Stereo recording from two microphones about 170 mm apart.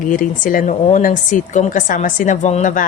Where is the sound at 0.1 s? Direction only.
50° left (ahead or behind).